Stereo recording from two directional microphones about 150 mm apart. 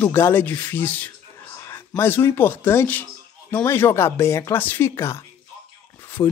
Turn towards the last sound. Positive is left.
turn(degrees=25)  # may be behind; listen again after turning